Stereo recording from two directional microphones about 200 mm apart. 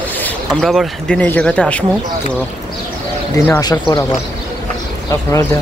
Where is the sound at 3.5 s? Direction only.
20° left (ahead or behind).